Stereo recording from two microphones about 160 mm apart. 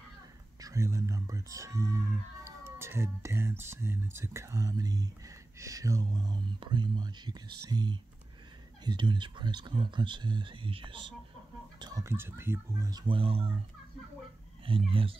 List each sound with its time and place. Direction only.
0.6 s speech: 20° right (ahead or behind)
11.8 s speech: 20° right (ahead or behind)
13.0 s speech: 35° right (ahead or behind)
14.6 s speech: 35° right (ahead or behind)